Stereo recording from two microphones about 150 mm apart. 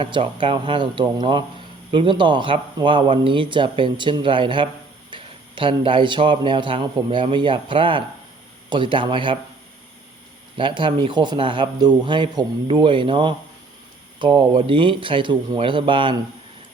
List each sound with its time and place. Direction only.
0.0 s a man's voice: 35° right (ahead or behind)
10.6 s a man's voice: 35° right (ahead or behind)